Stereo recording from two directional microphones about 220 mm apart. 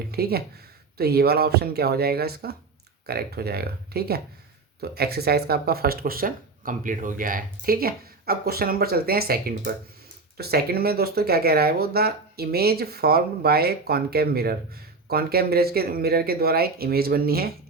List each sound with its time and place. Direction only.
0.1 s speech: 45° right (ahead or behind)